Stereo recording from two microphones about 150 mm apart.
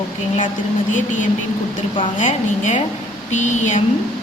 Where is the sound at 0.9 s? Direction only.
60° left (ahead or behind).